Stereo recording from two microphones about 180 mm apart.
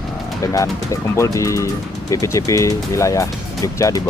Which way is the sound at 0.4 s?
15° left (ahead or behind).